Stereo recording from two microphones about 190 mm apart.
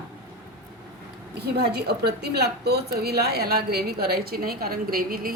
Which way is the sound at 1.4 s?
60° right (ahead or behind).